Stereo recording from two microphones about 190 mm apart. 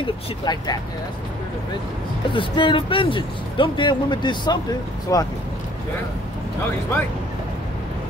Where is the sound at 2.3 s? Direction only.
25° left (ahead or behind).